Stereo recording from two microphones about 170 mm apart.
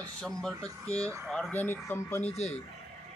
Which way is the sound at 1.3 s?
5° left (ahead or behind).